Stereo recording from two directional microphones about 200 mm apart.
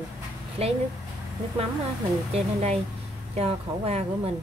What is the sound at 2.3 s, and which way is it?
A woman's voice, 30° right (ahead or behind).